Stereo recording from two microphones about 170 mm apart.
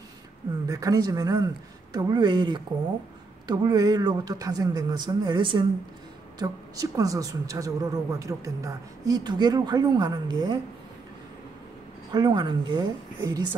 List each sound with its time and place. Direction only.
0.7 s speech: 20° right (ahead or behind)
12.1 s speech: 25° right (ahead or behind)
13.2 s a woman's voice: 15° right (ahead or behind)